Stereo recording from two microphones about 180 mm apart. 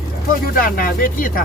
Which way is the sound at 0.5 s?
50° left (ahead or behind).